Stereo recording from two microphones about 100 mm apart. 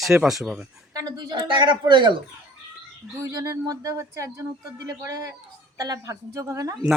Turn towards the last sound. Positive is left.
turn(degrees=-30)  # may be behind; listen again after turning